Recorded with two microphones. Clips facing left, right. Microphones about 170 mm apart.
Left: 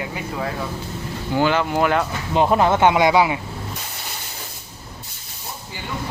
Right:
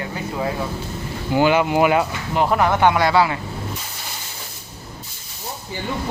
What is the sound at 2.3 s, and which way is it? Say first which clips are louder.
Speech: left 2 dB; 20° left (ahead or behind).